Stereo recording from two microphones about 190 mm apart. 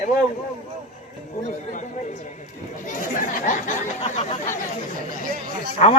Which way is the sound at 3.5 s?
40° left (ahead or behind).